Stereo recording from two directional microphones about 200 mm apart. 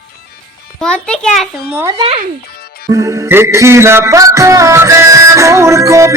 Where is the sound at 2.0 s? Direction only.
30° right (ahead or behind).